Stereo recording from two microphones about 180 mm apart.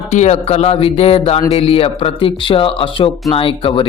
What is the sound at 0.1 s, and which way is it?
Speech, 40° left (ahead or behind).